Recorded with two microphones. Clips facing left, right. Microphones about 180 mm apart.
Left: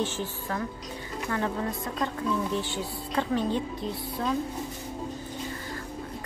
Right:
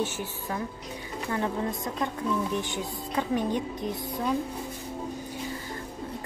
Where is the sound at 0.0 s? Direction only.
15° right (ahead or behind).